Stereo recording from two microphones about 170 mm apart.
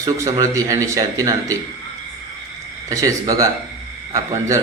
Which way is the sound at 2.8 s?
20° right (ahead or behind).